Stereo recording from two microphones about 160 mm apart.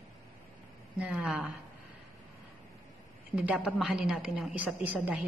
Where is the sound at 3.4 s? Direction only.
5° right (ahead or behind).